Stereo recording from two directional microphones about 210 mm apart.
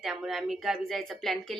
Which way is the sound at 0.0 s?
Centre (ahead or behind).